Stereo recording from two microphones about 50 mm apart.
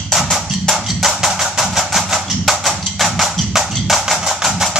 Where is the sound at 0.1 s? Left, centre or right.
Centre.